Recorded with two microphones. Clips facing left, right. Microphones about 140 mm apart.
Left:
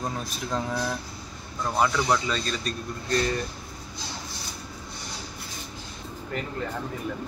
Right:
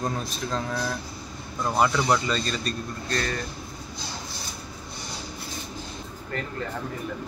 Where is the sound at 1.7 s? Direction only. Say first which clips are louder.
Right 1 dB; 5° right (ahead or behind).